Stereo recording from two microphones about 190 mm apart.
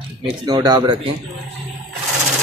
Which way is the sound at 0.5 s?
25° right (ahead or behind).